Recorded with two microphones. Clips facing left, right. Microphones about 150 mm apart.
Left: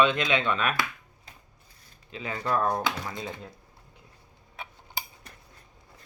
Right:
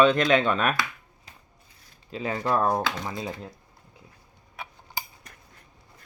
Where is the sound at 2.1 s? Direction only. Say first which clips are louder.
Right 3 dB; 35° right (ahead or behind).